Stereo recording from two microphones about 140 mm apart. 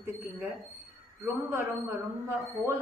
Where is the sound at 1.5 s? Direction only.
20° right (ahead or behind).